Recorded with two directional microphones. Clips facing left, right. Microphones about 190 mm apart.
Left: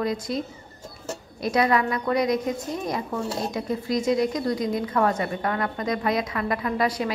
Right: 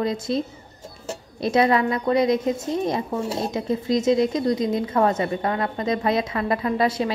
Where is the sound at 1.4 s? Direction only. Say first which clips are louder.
Right 3 dB; 25° right (ahead or behind).